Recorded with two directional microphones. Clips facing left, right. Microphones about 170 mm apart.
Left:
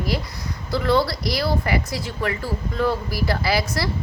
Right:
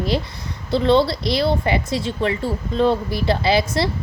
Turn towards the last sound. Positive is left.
turn(degrees=-25)  # may be behind; listen again after turning